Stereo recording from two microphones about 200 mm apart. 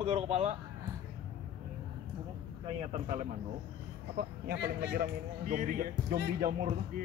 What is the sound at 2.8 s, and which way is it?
Speech, 40° right (ahead or behind).